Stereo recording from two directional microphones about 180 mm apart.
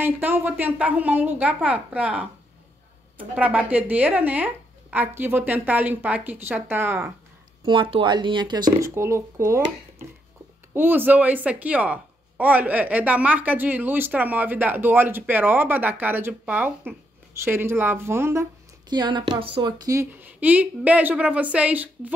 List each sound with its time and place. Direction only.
0.0 s a woman's voice: 10° right (ahead or behind)
7.6 s a woman's voice: 30° right (ahead or behind); by 22.1 s 10° right (ahead or behind)